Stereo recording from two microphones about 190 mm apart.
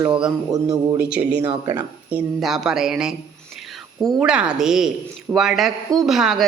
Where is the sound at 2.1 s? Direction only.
5° right (ahead or behind).